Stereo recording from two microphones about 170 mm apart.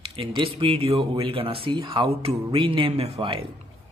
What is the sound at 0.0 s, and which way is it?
Speech, 30° right (ahead or behind).